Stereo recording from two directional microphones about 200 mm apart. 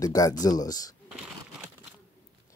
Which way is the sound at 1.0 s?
5° right (ahead or behind).